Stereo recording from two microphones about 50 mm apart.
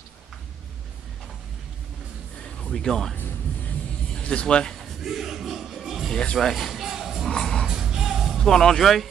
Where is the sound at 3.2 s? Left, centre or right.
Left.